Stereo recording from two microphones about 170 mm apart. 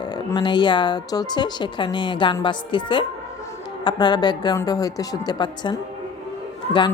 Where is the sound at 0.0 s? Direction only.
25° left (ahead or behind).